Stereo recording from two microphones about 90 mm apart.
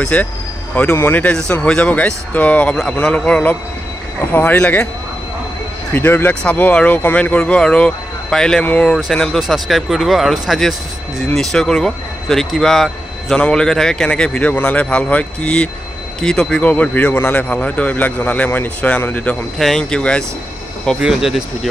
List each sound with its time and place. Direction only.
0.0 s speech: 15° left (ahead or behind)
0.9 s speech: 25° left (ahead or behind)
1.2 s speech: 15° left (ahead or behind)
5.9 s speech: 20° left (ahead or behind)
19.6 s speech: 5° left (ahead or behind)
21.0 s speech: 5° right (ahead or behind)